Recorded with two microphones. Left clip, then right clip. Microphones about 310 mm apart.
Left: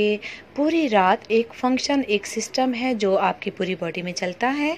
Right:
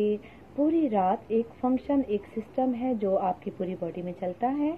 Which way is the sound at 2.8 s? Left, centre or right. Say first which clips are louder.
Left 8 dB; left.